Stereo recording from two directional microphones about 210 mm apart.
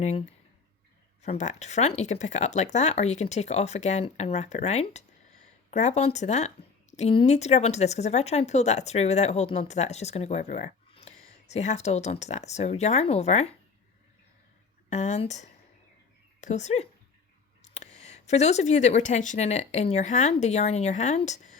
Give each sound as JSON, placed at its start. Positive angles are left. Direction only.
{"t": 0.0, "sound": "speech", "side_deg": 30}
{"t": 14.8, "sound": "speech", "side_deg": 30}